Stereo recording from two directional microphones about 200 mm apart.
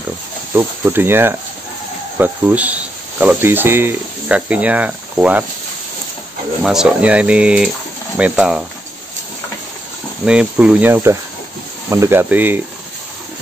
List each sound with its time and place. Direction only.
0.6 s speech: 10° right (ahead or behind)
6.6 s speech: 5° right (ahead or behind)
10.2 s speech: 5° right (ahead or behind)